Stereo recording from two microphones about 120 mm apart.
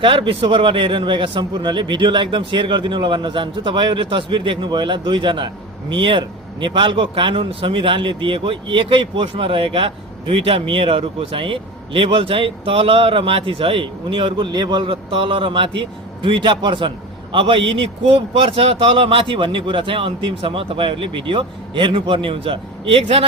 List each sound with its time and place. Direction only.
0.0 s a man's voice: 45° right (ahead or behind)